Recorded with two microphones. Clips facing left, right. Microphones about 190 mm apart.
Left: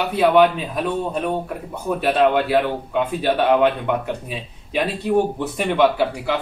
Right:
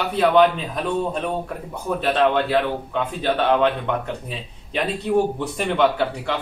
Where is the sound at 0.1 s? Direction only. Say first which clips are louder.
Left 1 dB; 5° left (ahead or behind).